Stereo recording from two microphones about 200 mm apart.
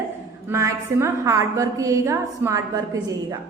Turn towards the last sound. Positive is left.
turn(degrees=-15)  # may be behind; listen again after turning